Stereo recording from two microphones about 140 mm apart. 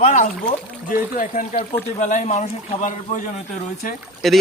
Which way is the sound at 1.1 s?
75° left (ahead or behind).